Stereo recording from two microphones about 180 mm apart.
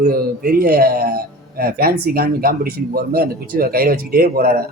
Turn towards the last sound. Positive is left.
turn(degrees=-55)  # may be behind; listen again after turning